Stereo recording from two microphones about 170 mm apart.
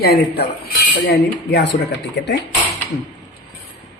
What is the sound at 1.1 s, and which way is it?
Speech, 80° left.